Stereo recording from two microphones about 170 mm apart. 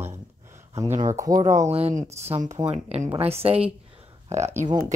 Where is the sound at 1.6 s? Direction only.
40° right (ahead or behind).